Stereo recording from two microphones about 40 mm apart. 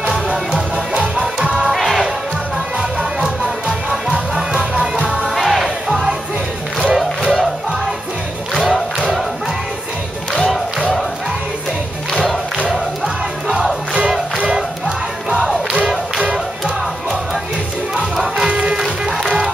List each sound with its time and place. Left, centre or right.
1.7 s music: centre
4.1 s music: centre
5.3 s music: centre
12.1 s crowd: centre
12.6 s music: centre
16.3 s music: right
17.9 s music: centre
18.5 s music: right